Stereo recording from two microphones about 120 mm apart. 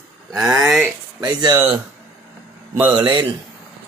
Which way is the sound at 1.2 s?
35° right (ahead or behind).